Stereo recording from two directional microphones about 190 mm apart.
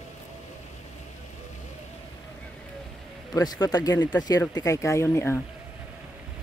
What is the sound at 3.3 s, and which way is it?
Speech, 20° left (ahead or behind).